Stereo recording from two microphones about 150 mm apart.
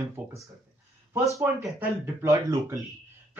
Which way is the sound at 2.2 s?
20° right (ahead or behind).